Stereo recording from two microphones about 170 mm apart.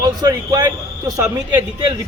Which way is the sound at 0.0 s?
20° right (ahead or behind).